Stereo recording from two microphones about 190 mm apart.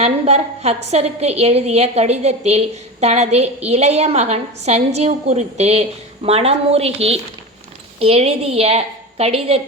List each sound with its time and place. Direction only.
0.0 s a woman's voice: 35° right (ahead or behind)